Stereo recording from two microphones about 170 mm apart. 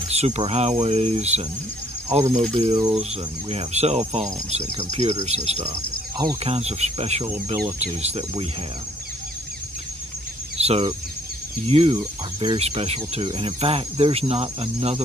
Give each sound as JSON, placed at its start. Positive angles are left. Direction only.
{"t": 0.1, "sound": "speech", "side_deg": -40}
{"t": 2.5, "sound": "speech", "side_deg": -30}
{"t": 5.7, "sound": "speech", "side_deg": -20}
{"t": 6.4, "sound": "speech", "side_deg": -35}
{"t": 10.6, "sound": "speech", "side_deg": -35}